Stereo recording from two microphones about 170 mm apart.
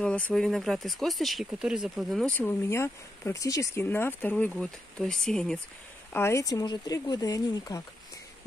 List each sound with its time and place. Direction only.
0.0 s speech: 5° left (ahead or behind)
2.3 s speech: 15° left (ahead or behind)
6.1 s speech: 15° left (ahead or behind)